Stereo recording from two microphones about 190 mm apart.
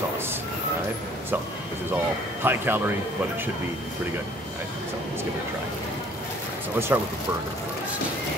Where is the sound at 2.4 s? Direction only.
10° right (ahead or behind).